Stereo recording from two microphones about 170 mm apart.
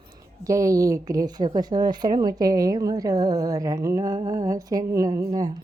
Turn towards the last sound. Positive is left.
turn(degrees=-25)  # may be behind; listen again after turning